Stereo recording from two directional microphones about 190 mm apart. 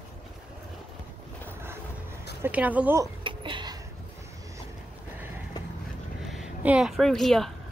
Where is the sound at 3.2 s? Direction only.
25° right (ahead or behind).